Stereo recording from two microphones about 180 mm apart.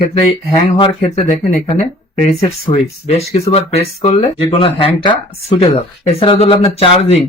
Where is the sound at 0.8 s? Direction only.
30° left (ahead or behind).